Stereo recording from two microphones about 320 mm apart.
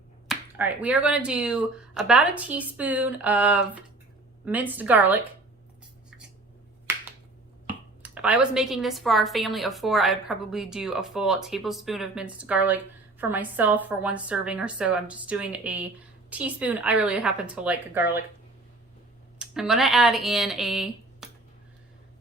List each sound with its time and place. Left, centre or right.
0.3 s a woman's voice: centre
8.0 s a woman's voice: centre
19.4 s speech: centre